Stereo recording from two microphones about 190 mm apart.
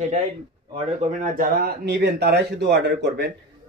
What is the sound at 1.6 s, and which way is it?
Speech, 60° right (ahead or behind).